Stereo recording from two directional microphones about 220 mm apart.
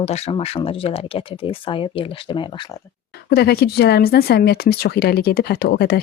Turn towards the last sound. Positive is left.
turn(degrees=45)  # may be behind; listen again after turning